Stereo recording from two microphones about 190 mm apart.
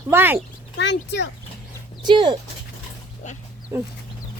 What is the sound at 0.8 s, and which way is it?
Speech, 65° left (ahead or behind).